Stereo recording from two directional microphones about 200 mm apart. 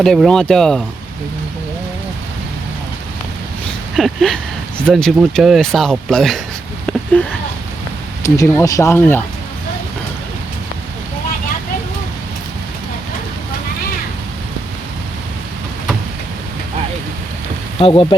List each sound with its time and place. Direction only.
0.0 s speech: centre (ahead or behind)
3.9 s speech: centre (ahead or behind)
17.7 s speech: 25° left (ahead or behind)